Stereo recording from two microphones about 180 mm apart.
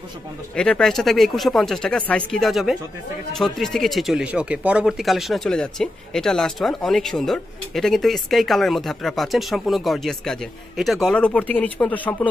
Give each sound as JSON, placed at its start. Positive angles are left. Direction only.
{"t": 0.6, "sound": "speech", "side_deg": 5}